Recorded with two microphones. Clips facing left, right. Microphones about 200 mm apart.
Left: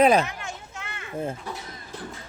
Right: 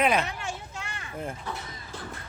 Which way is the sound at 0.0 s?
35° left (ahead or behind).